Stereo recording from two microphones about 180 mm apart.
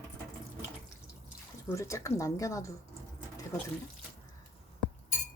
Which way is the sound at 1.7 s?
15° left (ahead or behind).